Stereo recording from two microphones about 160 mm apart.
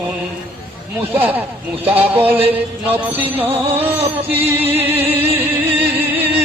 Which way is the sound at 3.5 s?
35° right (ahead or behind).